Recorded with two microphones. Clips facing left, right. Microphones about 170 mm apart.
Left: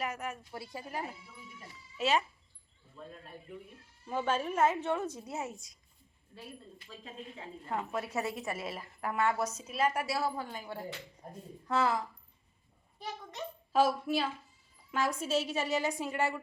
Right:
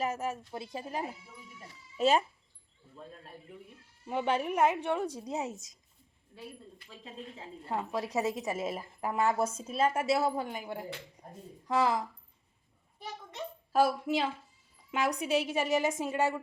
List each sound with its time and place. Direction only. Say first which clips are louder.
0.0 s a woman's voice: right 4 dB; 25° right (ahead or behind)
1.5 s speech: right 5 dB; 35° right (ahead or behind)
4.1 s a woman's voice: right 2 dB; 15° right (ahead or behind)
7.0 s a woman's voice: right 1 dB; 25° right (ahead or behind)
9.6 s a woman's voice: right 2 dB; 30° right (ahead or behind)
13.7 s a woman's voice: right 1 dB; 15° right (ahead or behind)